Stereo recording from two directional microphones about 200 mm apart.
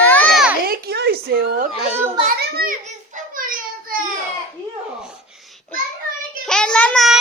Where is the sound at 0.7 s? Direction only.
55° right (ahead or behind).